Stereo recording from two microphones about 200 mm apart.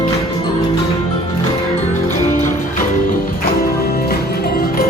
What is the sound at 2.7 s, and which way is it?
Music, 45° left (ahead or behind).